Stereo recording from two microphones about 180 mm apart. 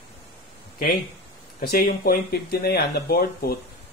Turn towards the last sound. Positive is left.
turn(degrees=55)  # may be behind; listen again after turning